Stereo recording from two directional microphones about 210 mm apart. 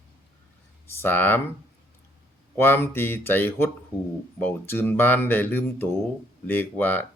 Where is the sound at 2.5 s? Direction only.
10° left (ahead or behind).